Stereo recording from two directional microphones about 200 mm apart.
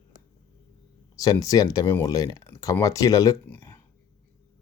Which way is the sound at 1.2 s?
15° left (ahead or behind).